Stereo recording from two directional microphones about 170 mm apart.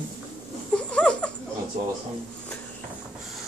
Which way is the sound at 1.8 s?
45° right (ahead or behind).